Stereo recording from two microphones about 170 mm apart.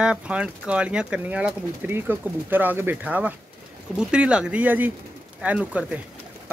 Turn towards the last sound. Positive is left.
turn(degrees=-5)  # may be behind; listen again after turning